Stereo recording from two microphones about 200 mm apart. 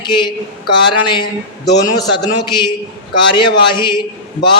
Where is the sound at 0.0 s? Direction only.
25° left (ahead or behind).